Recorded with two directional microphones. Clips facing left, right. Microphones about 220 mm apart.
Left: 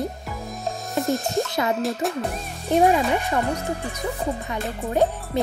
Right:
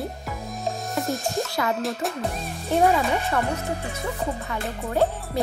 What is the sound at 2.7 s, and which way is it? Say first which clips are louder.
Speech: left 2 dB; 15° left (ahead or behind).